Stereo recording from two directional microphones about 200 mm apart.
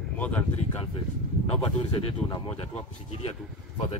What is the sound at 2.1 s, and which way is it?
Speech, 20° left (ahead or behind).